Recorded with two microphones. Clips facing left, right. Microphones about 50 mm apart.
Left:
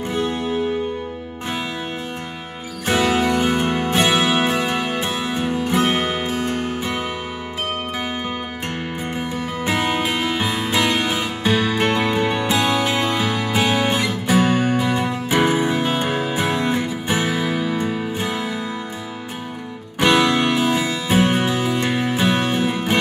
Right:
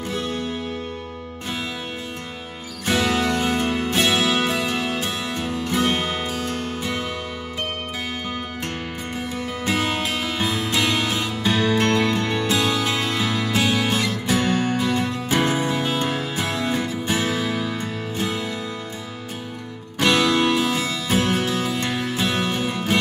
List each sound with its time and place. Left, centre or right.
0.1 s music: centre
2.9 s music: centre
9.2 s music: centre
20.0 s music: centre